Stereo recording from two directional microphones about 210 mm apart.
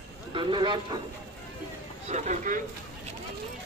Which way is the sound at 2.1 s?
35° right (ahead or behind).